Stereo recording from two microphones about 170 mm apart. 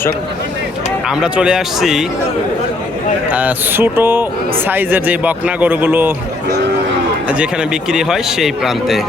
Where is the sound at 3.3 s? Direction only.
10° right (ahead or behind).